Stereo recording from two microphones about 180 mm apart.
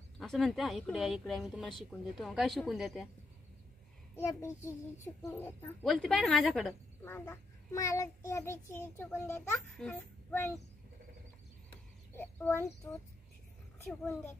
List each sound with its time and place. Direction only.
0.2 s speech: centre (ahead or behind)
4.2 s a child's voice: 15° left (ahead or behind)
5.9 s speech: centre (ahead or behind)
7.1 s a child's voice: 15° left (ahead or behind)
12.2 s a child's voice: 15° left (ahead or behind)